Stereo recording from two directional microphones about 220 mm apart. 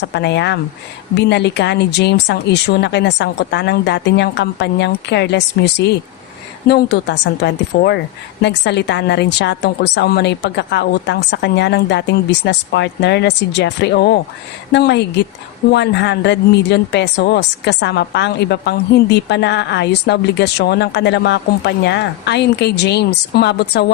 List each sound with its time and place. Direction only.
0.0 s speech: 50° left (ahead or behind)